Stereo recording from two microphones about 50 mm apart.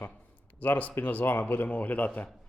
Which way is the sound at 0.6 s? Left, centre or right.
Left.